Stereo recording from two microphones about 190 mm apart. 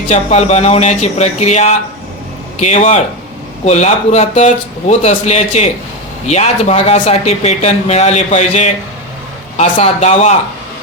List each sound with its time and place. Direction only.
0.1 s speech: 35° left (ahead or behind)